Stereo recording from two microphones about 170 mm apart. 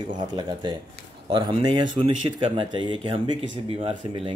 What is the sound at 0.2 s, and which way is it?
Speech, 25° right (ahead or behind).